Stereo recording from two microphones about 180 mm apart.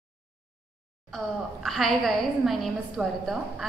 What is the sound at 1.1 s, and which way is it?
A woman's voice, centre (ahead or behind).